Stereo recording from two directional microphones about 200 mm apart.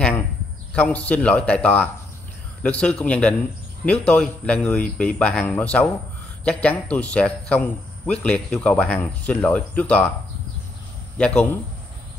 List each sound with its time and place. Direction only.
0.7 s speech: 5° left (ahead or behind)
11.1 s speech: 5° left (ahead or behind)